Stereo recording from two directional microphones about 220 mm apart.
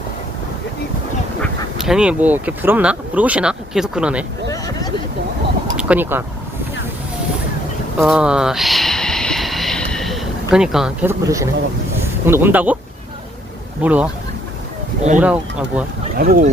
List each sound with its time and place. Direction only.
1.4 s speech: centre (ahead or behind)
4.5 s speech: 15° left (ahead or behind)
5.7 s speech: 5° right (ahead or behind)
7.9 s a sound: centre (ahead or behind)
12.2 s speech: 10° right (ahead or behind)
13.8 s speech: 5° right (ahead or behind)
15.2 s speech: 5° right (ahead or behind)
16.1 s speech: 40° right (ahead or behind)